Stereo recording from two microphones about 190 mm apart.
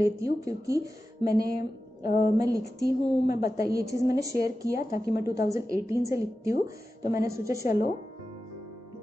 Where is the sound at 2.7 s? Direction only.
60° left (ahead or behind).